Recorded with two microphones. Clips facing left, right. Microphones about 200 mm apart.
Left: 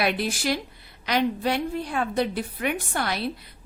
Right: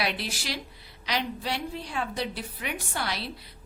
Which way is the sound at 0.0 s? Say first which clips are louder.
Left 7 dB; 55° left (ahead or behind).